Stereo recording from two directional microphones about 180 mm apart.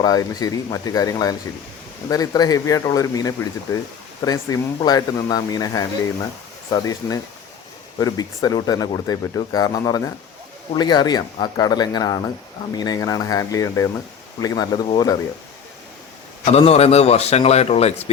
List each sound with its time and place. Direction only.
0.0 s speech: 20° left (ahead or behind)
16.5 s a man's voice: 35° left (ahead or behind)